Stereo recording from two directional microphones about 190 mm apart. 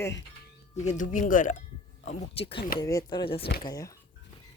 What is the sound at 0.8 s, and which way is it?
Speech, 40° left (ahead or behind).